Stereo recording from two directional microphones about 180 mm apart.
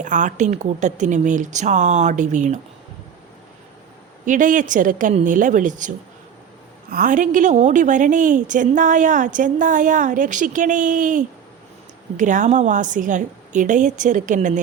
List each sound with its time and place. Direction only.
0.0 s speech: 45° right (ahead or behind)
4.3 s a woman's voice: 45° right (ahead or behind)
6.9 s a woman's voice: 50° right (ahead or behind)